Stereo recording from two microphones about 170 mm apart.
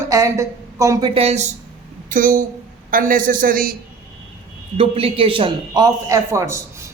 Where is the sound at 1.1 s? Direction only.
40° right (ahead or behind).